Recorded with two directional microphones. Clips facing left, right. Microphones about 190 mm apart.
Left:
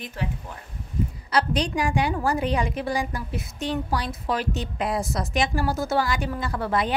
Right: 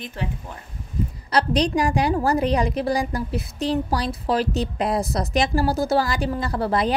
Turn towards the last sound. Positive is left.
turn(degrees=-35)  # may be behind; listen again after turning